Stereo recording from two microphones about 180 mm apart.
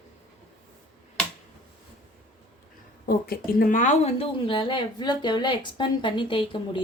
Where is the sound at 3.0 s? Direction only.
55° left (ahead or behind); by 6.8 s 30° left (ahead or behind).